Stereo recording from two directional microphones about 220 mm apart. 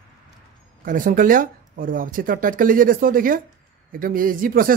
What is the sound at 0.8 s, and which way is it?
A man's voice, 40° right (ahead or behind).